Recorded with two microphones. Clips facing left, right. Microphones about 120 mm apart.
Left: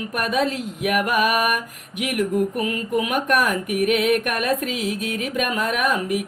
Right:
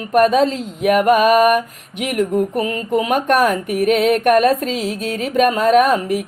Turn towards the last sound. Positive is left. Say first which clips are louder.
# right 8 dB
turn(degrees=-35)  # may be behind; listen again after turning